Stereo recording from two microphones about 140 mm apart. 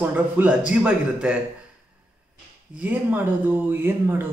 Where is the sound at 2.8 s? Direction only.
10° right (ahead or behind).